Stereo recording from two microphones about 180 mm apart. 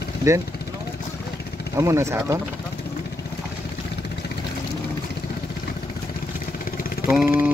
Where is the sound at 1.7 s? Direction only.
15° right (ahead or behind).